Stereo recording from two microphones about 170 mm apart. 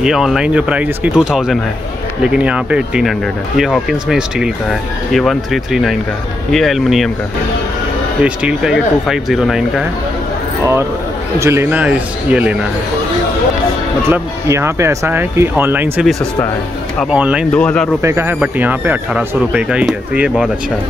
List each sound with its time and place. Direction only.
0.0 s speech: centre (ahead or behind)
8.2 s speech: 5° right (ahead or behind)
10.6 s speech: 15° right (ahead or behind)
14.0 s speech: 15° right (ahead or behind)
17.1 s speech: 5° right (ahead or behind)
17.5 s speech: 5° left (ahead or behind)
18.0 s speech: 15° right (ahead or behind)